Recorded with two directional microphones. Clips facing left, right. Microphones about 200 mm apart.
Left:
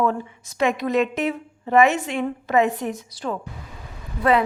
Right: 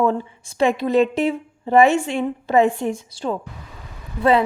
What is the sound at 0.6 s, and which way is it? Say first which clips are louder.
A woman's voice: right 4 dB; 30° right (ahead or behind).